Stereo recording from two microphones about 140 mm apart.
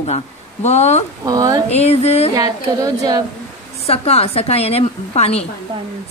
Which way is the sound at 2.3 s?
25° right (ahead or behind).